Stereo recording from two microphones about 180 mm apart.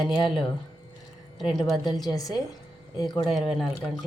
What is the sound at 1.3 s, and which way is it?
Speech, centre (ahead or behind).